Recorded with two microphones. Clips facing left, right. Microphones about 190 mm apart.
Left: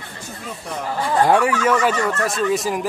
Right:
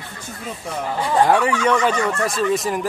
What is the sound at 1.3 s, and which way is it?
Speech, 10° left (ahead or behind).